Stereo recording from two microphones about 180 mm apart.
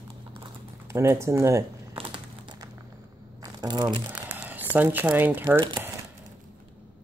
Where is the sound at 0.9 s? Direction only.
15° right (ahead or behind).